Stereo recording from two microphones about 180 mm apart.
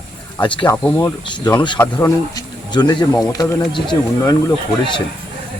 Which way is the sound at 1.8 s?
15° left (ahead or behind).